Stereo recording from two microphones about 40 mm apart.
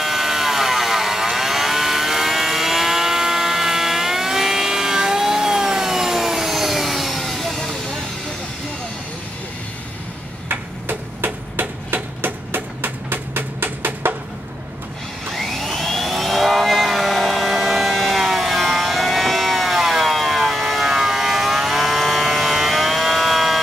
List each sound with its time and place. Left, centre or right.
0.0 s vehicle: centre
10.5 s a sound: right
15.3 s vehicle: centre